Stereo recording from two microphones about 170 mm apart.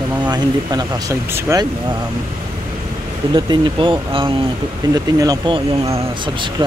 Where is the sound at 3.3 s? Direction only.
30° right (ahead or behind).